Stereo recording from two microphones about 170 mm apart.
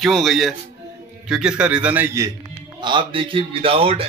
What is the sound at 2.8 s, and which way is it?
A man's voice, 30° right (ahead or behind).